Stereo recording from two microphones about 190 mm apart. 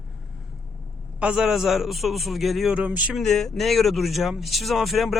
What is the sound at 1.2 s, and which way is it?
A man's voice, 5° right (ahead or behind).